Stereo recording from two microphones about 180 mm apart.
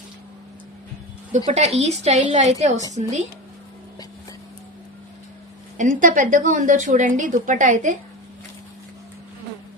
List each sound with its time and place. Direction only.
1.5 s a woman's voice: 35° right (ahead or behind)
5.7 s a woman's voice: 45° right (ahead or behind)